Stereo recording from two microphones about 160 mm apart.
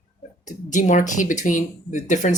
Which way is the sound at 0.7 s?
50° left (ahead or behind).